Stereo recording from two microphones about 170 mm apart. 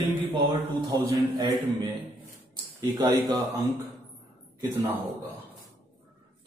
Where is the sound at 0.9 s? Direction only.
25° right (ahead or behind).